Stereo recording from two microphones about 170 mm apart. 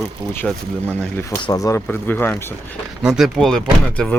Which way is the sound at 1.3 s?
20° left (ahead or behind).